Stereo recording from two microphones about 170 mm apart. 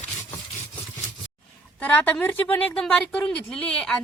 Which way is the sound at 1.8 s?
10° left (ahead or behind).